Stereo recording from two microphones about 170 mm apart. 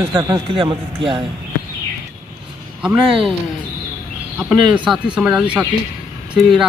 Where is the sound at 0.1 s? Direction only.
25° right (ahead or behind).